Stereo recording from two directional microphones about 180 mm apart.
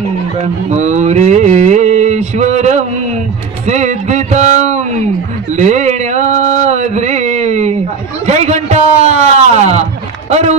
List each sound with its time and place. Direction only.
0.4 s mantra: 40° right (ahead or behind)
3.6 s music: 40° right (ahead or behind)
5.6 s a sound: 40° right (ahead or behind)